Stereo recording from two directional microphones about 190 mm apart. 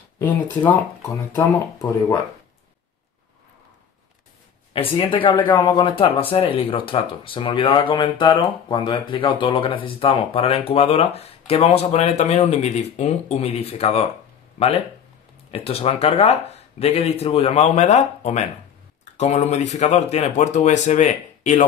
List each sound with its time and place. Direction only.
0.2 s speech: 10° left (ahead or behind)
4.7 s speech: 30° left (ahead or behind)
15.5 s speech: 30° left (ahead or behind)